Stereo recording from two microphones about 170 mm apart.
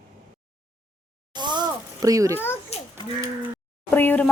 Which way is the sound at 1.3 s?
25° right (ahead or behind).